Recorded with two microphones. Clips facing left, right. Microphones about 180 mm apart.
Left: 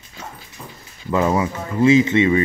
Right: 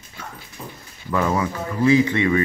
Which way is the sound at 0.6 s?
10° right (ahead or behind).